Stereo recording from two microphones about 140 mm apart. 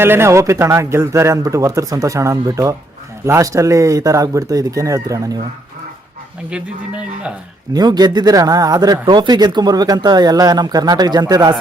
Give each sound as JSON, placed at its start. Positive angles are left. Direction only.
{"t": 0.0, "sound": "speech", "side_deg": -15}
{"t": 6.5, "sound": "speech", "side_deg": -5}
{"t": 7.7, "sound": "speech", "side_deg": -30}